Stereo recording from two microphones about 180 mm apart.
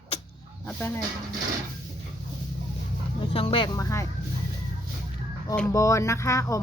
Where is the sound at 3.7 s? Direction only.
15° left (ahead or behind).